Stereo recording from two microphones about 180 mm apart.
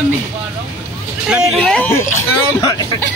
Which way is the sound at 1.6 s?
10° left (ahead or behind).